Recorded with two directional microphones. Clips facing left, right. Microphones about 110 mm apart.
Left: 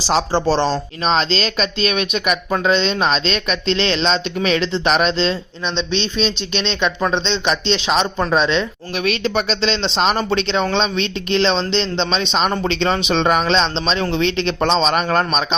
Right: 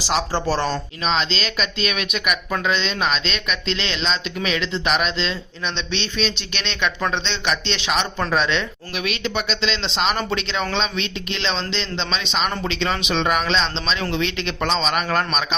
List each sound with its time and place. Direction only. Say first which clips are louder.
0.0 s speech: left 5 dB; 30° left (ahead or behind)
1.0 s speech: left 5 dB; 40° left (ahead or behind)
9.0 s speech: left 6 dB; 40° left (ahead or behind)